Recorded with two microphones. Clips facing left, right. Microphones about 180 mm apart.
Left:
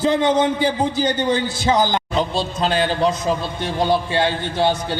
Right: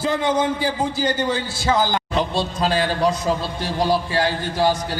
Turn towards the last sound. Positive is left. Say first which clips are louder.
# left 1 dB
turn(degrees=25)  # may be behind; listen again after turning